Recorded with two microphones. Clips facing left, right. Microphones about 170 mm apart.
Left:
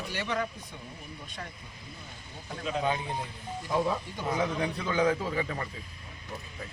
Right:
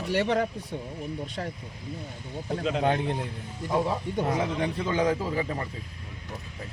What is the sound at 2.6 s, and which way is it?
Speech, 75° right (ahead or behind).